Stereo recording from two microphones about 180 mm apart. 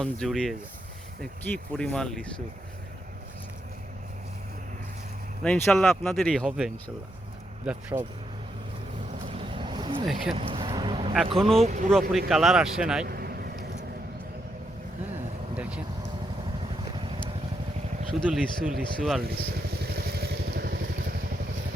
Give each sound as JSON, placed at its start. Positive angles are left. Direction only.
{"t": 0.0, "sound": "speech", "side_deg": 5}
{"t": 5.4, "sound": "speech", "side_deg": 5}
{"t": 7.6, "sound": "speech", "side_deg": -5}
{"t": 9.2, "sound": "vehicle", "side_deg": -30}
{"t": 10.3, "sound": "a sound", "side_deg": -30}
{"t": 11.3, "sound": "speech", "side_deg": 0}
{"t": 11.6, "sound": "speech", "side_deg": -45}
{"t": 11.9, "sound": "speech", "side_deg": 0}
{"t": 13.1, "sound": "vehicle", "side_deg": -60}
{"t": 15.1, "sound": "vehicle", "side_deg": -5}
{"t": 18.1, "sound": "speech", "side_deg": -5}
{"t": 19.8, "sound": "vehicle", "side_deg": -60}